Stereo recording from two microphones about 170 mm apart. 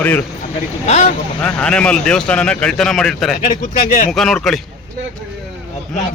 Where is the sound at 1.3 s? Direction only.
10° left (ahead or behind).